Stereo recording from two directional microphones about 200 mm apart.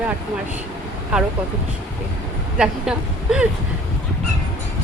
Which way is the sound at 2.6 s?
5° right (ahead or behind).